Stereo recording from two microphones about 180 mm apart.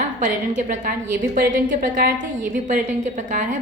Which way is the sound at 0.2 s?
45° right (ahead or behind).